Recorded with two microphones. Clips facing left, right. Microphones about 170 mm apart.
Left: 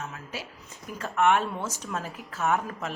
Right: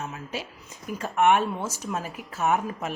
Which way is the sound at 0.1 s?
20° right (ahead or behind).